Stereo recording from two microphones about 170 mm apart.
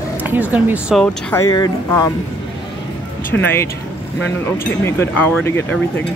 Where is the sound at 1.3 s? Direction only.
20° left (ahead or behind).